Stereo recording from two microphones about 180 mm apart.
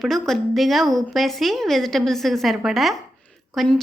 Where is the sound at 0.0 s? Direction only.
Centre (ahead or behind).